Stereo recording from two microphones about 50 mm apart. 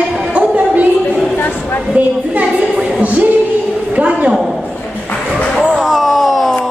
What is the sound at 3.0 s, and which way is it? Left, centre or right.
Singing, right.